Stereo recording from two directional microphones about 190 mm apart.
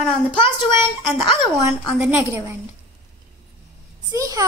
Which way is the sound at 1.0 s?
5° left (ahead or behind).